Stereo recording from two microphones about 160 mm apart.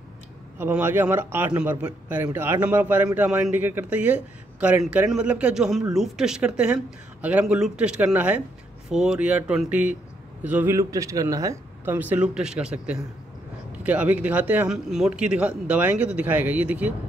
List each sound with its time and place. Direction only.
0.6 s speech: 10° right (ahead or behind)